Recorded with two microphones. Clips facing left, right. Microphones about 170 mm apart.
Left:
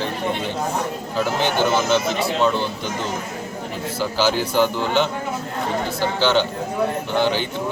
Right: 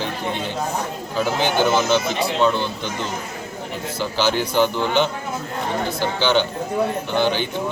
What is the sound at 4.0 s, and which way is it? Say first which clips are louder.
A man's voice: left 1 dB; 5° left (ahead or behind).